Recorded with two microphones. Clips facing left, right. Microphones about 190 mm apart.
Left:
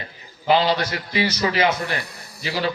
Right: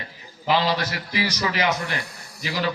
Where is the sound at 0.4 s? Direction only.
30° left (ahead or behind).